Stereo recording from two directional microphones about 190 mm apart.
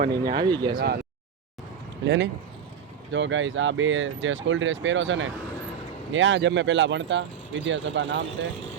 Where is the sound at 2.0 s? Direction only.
70° right (ahead or behind).